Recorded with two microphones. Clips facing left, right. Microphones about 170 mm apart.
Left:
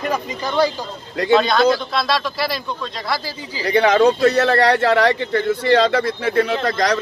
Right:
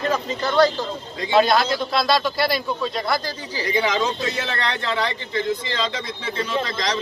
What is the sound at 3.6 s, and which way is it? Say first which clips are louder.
Speech: left 8 dB; 65° left (ahead or behind).